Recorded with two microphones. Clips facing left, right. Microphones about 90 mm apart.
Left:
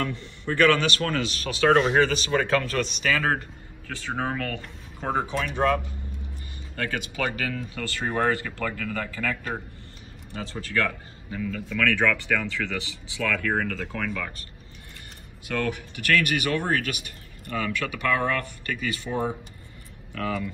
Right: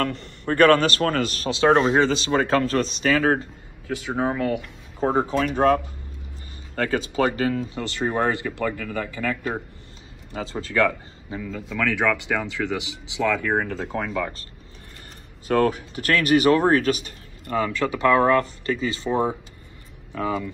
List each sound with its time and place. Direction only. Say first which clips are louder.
0.0 s a man's voice: right 4 dB; 60° right (ahead or behind)
0.6 s speech: right 5 dB; 45° right (ahead or behind)
1.5 s speech: right 2 dB; 30° right (ahead or behind)
3.8 s speech: right 5 dB; 10° right (ahead or behind)
5.0 s speech: right 6 dB; 35° right (ahead or behind)
15.4 s speech: right 8 dB; 35° right (ahead or behind)